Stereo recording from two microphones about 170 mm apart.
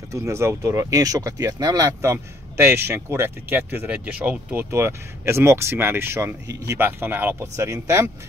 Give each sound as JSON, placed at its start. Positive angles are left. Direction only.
{"t": 0.1, "sound": "speech", "side_deg": -15}